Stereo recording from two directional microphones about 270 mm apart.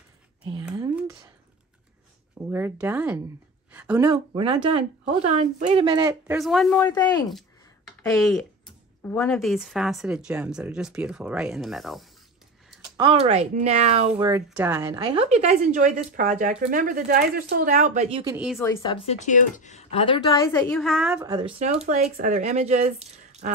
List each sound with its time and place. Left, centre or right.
2.5 s speech: centre
3.7 s a sound: centre
4.1 s a woman's voice: centre
6.3 s speech: centre
8.0 s speech: centre
12.9 s a woman's voice: centre
18.2 s speech: centre
18.6 s a woman's voice: centre
21.2 s a woman's voice: centre